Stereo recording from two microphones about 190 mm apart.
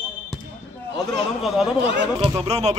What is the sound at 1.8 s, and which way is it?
Speech, 65° right (ahead or behind).